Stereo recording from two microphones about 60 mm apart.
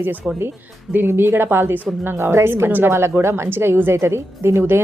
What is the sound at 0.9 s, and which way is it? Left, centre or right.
A woman's voice, right.